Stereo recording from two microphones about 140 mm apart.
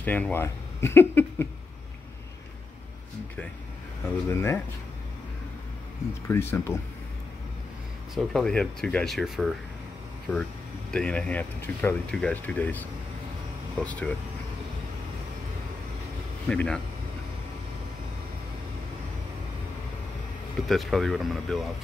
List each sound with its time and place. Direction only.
0.0 s speech: 10° left (ahead or behind)
4.0 s speech: 20° left (ahead or behind)
6.2 s speech: 15° left (ahead or behind)
8.1 s speech: centre (ahead or behind)
10.3 s speech: 10° left (ahead or behind)
16.4 s speech: 5° left (ahead or behind)
20.6 s speech: centre (ahead or behind)